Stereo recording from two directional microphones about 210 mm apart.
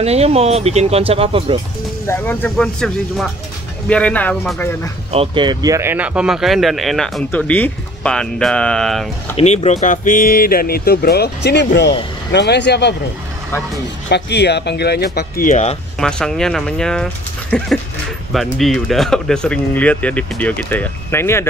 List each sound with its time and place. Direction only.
0.0 s speech: 30° right (ahead or behind)
2.0 s speech: 10° left (ahead or behind)
5.1 s speech: 25° right (ahead or behind); by 9.4 s centre (ahead or behind)
9.4 s speech: 30° left (ahead or behind); by 12.9 s 55° left (ahead or behind)
14.1 s speech: 55° left (ahead or behind); by 15.8 s 35° left (ahead or behind)
16.0 s speech: 5° left (ahead or behind)